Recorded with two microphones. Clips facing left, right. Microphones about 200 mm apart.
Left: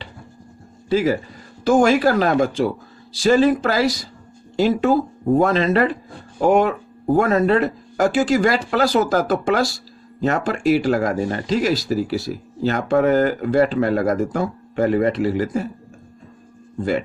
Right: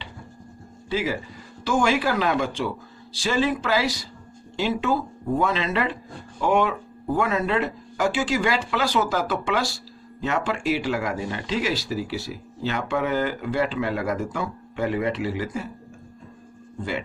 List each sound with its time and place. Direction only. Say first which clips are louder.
0.9 s speech: left 8 dB; 45° left (ahead or behind)